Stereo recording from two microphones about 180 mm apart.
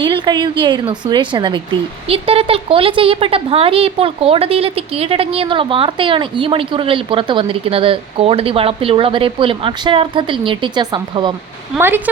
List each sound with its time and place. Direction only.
0.0 s a woman's voice: 25° right (ahead or behind)
11.8 s speech: 10° right (ahead or behind)